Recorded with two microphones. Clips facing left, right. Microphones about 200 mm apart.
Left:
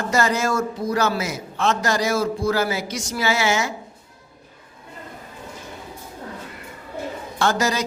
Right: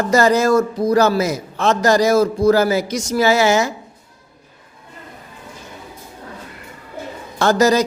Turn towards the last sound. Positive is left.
turn(degrees=-40)  # may be behind; listen again after turning